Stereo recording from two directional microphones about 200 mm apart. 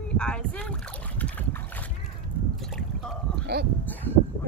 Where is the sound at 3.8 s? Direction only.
10° left (ahead or behind).